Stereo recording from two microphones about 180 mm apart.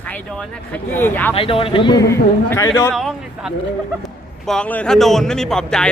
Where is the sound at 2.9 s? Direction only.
Centre (ahead or behind).